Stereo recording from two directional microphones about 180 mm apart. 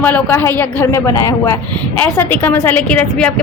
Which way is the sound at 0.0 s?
10° left (ahead or behind).